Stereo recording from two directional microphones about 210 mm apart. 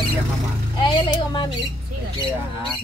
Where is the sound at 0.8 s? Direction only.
20° left (ahead or behind).